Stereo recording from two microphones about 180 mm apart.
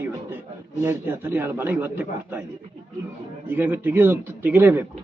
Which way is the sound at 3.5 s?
10° right (ahead or behind).